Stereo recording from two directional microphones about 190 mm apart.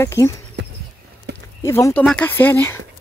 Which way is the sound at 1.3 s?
60° right (ahead or behind).